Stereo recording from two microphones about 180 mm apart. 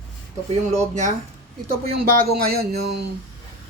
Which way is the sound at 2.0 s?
60° right (ahead or behind).